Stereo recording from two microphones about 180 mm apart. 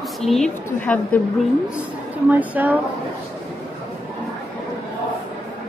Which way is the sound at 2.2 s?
10° right (ahead or behind).